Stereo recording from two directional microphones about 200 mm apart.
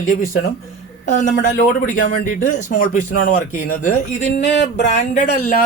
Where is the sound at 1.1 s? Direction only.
40° left (ahead or behind).